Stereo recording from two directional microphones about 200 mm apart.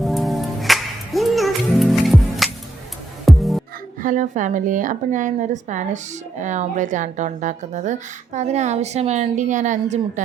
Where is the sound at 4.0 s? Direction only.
40° right (ahead or behind).